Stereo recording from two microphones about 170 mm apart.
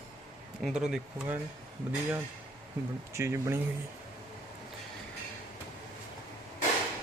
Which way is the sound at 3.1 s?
15° right (ahead or behind).